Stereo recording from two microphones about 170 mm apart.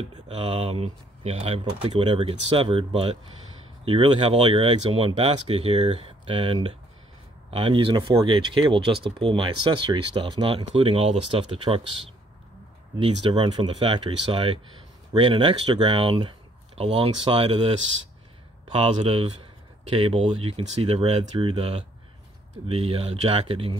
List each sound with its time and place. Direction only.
0.3 s speech: 40° right (ahead or behind)
13.0 s speech: 30° right (ahead or behind)